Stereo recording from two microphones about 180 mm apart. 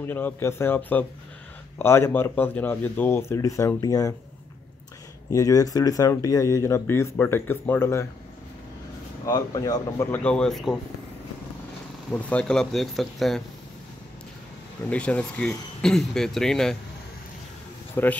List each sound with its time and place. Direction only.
0.0 s speech: 10° left (ahead or behind)
5.3 s speech: 20° left (ahead or behind)
9.2 s speech: 20° left (ahead or behind); by 10.8 s centre (ahead or behind)
12.1 s speech: 5° left (ahead or behind)
14.9 s speech: 5° left (ahead or behind)
18.0 s speech: 10° left (ahead or behind)